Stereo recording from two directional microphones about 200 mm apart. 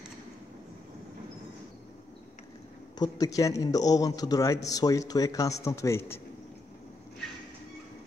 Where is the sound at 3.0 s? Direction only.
20° left (ahead or behind).